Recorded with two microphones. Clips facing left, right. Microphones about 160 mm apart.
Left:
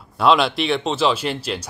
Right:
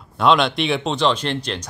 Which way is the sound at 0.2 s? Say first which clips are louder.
Even; 5° left (ahead or behind).